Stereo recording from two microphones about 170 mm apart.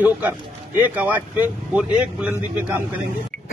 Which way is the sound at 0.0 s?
10° right (ahead or behind).